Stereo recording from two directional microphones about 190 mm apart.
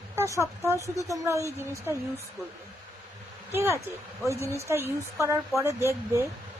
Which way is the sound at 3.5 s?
15° right (ahead or behind).